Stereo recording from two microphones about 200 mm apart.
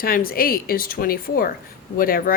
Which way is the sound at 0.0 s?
45° left (ahead or behind).